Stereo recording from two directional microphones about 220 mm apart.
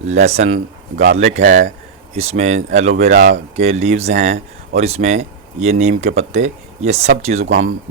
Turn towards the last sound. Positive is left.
turn(degrees=-30)  # may be behind; listen again after turning